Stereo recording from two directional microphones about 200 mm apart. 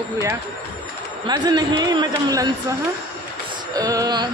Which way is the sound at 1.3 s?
20° right (ahead or behind).